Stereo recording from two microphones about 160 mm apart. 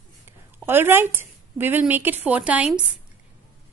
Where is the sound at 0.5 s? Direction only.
15° right (ahead or behind).